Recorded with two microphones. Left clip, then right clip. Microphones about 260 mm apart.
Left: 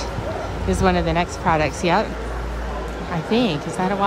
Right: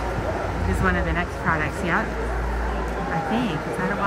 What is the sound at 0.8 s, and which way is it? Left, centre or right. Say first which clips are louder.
Speech: left 5 dB; left.